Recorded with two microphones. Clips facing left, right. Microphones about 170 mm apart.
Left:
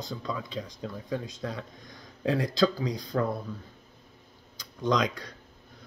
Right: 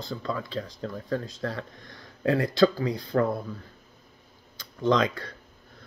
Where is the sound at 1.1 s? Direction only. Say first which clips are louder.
Right 3 dB; 15° left (ahead or behind).